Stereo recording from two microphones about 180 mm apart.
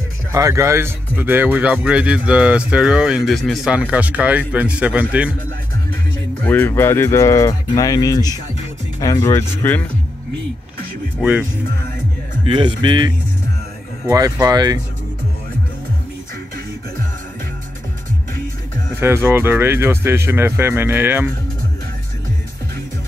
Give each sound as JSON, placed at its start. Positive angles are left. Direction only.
{"t": 0.3, "sound": "speech", "side_deg": -15}
{"t": 6.4, "sound": "speech", "side_deg": 10}
{"t": 11.1, "sound": "speech", "side_deg": -5}
{"t": 12.4, "sound": "speech", "side_deg": -25}
{"t": 18.9, "sound": "speech", "side_deg": -10}